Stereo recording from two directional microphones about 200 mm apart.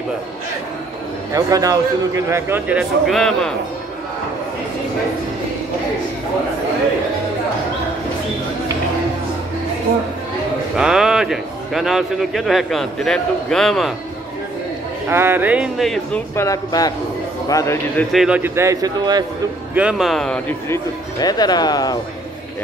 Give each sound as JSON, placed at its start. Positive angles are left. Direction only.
{"t": 1.3, "sound": "a man's voice", "side_deg": -15}
{"t": 3.1, "sound": "speech", "side_deg": 0}
{"t": 10.8, "sound": "speech", "side_deg": -5}
{"t": 15.0, "sound": "a man's voice", "side_deg": -10}
{"t": 16.3, "sound": "speech", "side_deg": 15}
{"t": 18.1, "sound": "a man's voice", "side_deg": -5}
{"t": 19.7, "sound": "speech", "side_deg": -5}
{"t": 20.6, "sound": "speech", "side_deg": 15}